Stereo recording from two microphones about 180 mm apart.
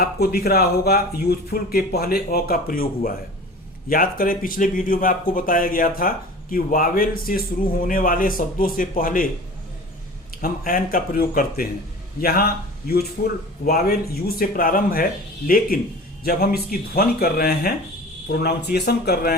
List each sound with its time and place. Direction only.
0.0 s speech: 55° left (ahead or behind)
10.3 s speech: 55° left (ahead or behind)